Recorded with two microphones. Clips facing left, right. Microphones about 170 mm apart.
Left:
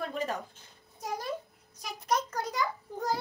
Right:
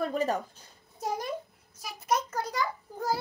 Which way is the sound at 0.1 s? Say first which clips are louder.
Right 5 dB; 40° right (ahead or behind).